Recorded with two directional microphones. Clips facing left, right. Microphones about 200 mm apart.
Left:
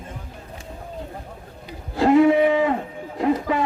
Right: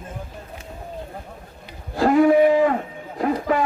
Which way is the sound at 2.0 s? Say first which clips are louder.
Even; 25° left (ahead or behind).